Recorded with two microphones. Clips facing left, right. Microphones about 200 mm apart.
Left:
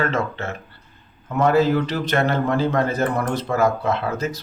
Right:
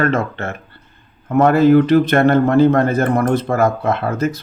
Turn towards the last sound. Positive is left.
turn(degrees=-55)  # may be behind; listen again after turning